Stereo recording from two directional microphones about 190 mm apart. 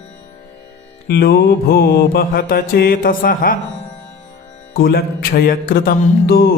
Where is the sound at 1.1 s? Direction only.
55° left (ahead or behind).